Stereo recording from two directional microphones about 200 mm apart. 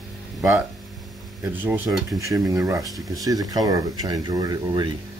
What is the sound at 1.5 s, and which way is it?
Speech, 10° right (ahead or behind).